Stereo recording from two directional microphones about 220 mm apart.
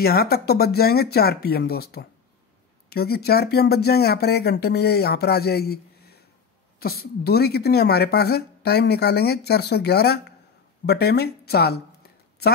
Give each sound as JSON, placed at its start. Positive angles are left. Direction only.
{"t": 0.0, "sound": "a woman's voice", "side_deg": 45}